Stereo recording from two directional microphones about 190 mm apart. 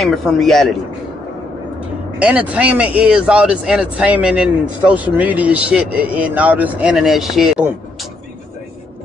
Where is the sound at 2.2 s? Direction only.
5° right (ahead or behind).